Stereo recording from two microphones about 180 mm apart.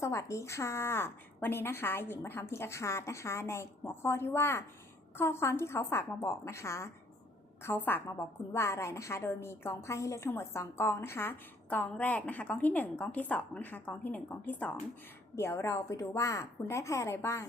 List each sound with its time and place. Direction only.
0.0 s a woman's voice: 15° left (ahead or behind)